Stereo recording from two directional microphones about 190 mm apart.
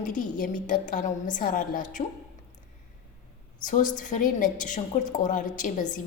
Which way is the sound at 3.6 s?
45° left (ahead or behind).